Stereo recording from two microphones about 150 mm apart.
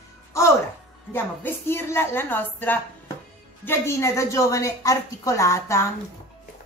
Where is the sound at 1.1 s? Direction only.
15° left (ahead or behind).